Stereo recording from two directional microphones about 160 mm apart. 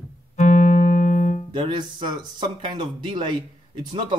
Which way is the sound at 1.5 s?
30° right (ahead or behind).